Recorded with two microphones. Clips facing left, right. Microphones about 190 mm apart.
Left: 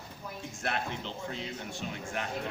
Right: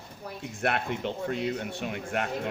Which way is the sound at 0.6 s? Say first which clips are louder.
Right 6 dB; 60° right (ahead or behind).